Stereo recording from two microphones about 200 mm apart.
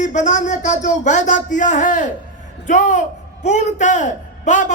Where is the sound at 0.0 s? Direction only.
35° left (ahead or behind).